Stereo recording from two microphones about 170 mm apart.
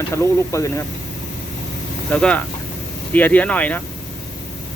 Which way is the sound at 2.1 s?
5° left (ahead or behind).